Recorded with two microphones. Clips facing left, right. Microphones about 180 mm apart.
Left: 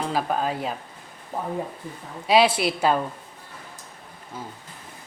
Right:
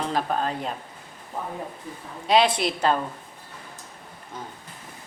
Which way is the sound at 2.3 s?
5° left (ahead or behind).